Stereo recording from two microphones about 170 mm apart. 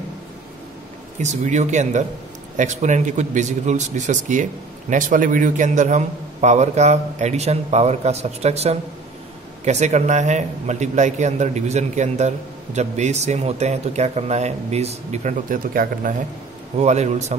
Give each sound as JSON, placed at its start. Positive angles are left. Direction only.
{"t": 1.2, "sound": "a man's voice", "side_deg": -45}
{"t": 16.7, "sound": "a man's voice", "side_deg": -40}